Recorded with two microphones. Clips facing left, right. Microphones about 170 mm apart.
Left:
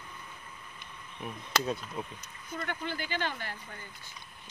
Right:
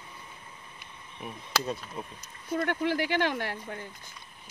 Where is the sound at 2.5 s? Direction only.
70° right (ahead or behind).